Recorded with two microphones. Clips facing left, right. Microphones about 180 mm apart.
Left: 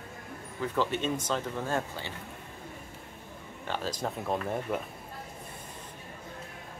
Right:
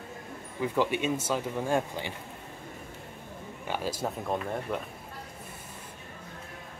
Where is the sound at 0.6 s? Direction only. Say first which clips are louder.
Right 2 dB; 15° right (ahead or behind).